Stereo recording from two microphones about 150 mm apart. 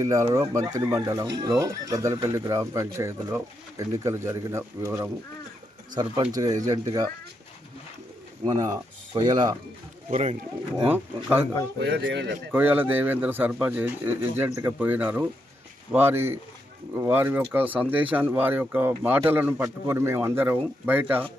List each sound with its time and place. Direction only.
0.0 s speech: 20° right (ahead or behind)
5.9 s speech: 30° right (ahead or behind)
8.4 s speech: 25° right (ahead or behind)
10.1 s speech: 55° right (ahead or behind)
10.8 s speech: 15° right (ahead or behind)
11.9 s speech: 90° right
12.5 s speech: 10° right (ahead or behind)